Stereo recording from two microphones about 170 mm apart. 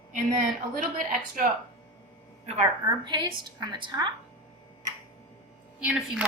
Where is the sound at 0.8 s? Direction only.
55° right (ahead or behind).